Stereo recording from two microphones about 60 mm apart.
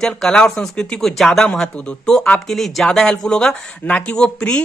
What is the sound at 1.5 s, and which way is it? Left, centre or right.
Speech, centre.